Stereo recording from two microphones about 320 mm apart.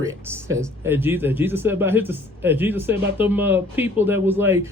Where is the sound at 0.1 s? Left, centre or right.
Centre.